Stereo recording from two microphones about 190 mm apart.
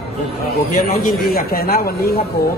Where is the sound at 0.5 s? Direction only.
50° left (ahead or behind).